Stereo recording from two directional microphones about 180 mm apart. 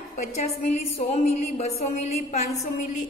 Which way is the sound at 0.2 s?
40° left (ahead or behind).